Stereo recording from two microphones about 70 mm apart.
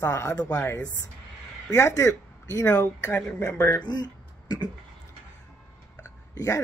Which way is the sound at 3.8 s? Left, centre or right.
Left.